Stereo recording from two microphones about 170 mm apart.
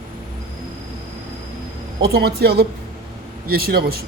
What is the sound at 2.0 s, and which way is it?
A man's voice, 65° right (ahead or behind).